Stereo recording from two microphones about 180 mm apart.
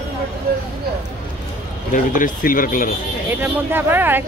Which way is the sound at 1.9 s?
45° left (ahead or behind).